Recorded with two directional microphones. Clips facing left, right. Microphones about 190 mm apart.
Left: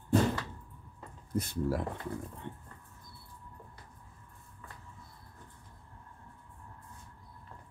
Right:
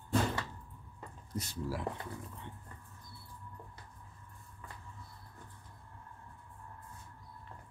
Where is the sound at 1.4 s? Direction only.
55° left (ahead or behind).